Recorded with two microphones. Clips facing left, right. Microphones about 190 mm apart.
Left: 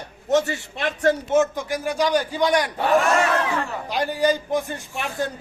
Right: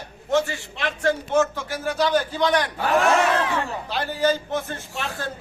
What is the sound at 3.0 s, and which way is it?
Speech, centre (ahead or behind).